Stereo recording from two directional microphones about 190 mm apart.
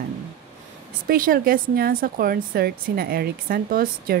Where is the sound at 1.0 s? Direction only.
50° right (ahead or behind).